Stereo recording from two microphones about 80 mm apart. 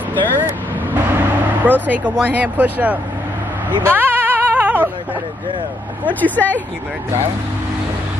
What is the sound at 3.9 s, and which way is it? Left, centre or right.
Music, right.